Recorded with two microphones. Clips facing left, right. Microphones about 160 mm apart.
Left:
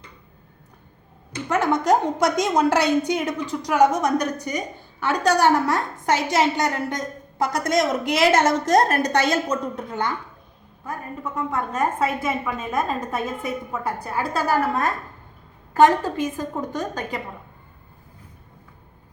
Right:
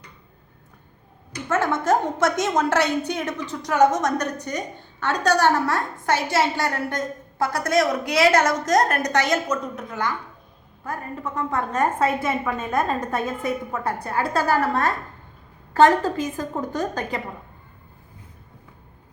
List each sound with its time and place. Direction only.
1.3 s a woman's voice: 15° left (ahead or behind)
11.2 s a woman's voice: centre (ahead or behind)
16.6 s a woman's voice: centre (ahead or behind)